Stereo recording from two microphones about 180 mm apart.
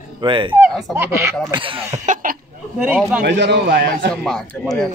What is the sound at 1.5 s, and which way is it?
Speech, 30° right (ahead or behind).